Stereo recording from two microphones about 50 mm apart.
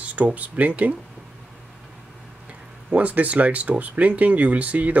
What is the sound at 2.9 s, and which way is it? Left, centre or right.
Speech, right.